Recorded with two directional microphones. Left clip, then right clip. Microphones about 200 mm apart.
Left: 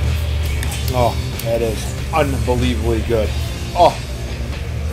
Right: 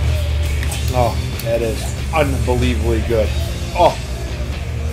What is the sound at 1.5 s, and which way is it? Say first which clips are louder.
Speech: even; 20° left (ahead or behind).